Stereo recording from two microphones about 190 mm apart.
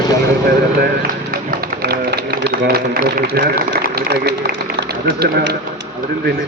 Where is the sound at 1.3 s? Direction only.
50° right (ahead or behind).